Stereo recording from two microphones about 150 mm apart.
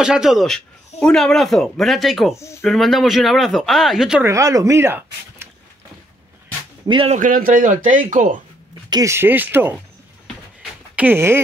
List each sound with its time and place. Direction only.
0.0 s speech: 5° right (ahead or behind)
2.3 s speech: 20° left (ahead or behind)
2.6 s speech: centre (ahead or behind)
4.3 s speech: 20° right (ahead or behind)
6.9 s speech: 35° right (ahead or behind)
7.2 s speech: 65° right (ahead or behind)
8.9 s speech: 20° right (ahead or behind)
10.2 s a sound: 5° right (ahead or behind)